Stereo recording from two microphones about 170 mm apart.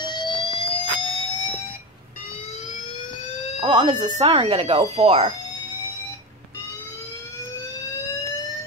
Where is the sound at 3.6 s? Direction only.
25° right (ahead or behind).